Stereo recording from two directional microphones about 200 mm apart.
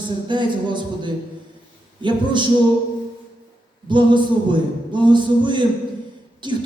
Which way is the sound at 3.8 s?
25° right (ahead or behind).